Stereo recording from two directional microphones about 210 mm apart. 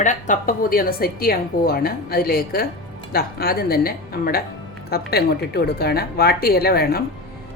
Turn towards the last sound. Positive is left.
turn(degrees=45)  # may be behind; listen again after turning